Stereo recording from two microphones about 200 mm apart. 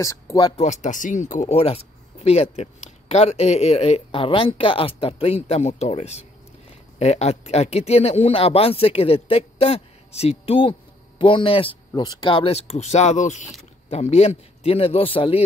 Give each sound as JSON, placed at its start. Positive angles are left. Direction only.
{"t": 0.0, "sound": "speech", "side_deg": 15}
{"t": 0.6, "sound": "speech", "side_deg": 35}